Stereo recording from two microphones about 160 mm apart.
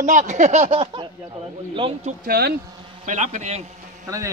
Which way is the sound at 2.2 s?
75° right (ahead or behind).